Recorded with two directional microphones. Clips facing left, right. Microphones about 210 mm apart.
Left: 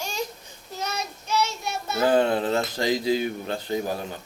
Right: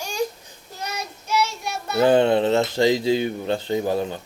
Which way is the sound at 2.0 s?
25° right (ahead or behind).